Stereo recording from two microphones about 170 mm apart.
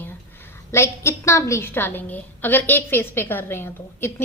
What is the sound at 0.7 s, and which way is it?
A woman's voice, 15° left (ahead or behind).